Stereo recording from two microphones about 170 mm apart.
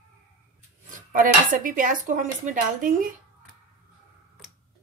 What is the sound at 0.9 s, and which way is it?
Speech, 50° right (ahead or behind).